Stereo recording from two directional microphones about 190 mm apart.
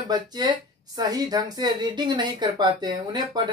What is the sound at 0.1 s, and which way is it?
Speech, 20° right (ahead or behind).